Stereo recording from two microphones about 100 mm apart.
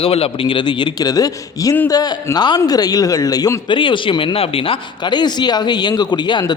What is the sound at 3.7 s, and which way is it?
A man's voice, 55° left (ahead or behind).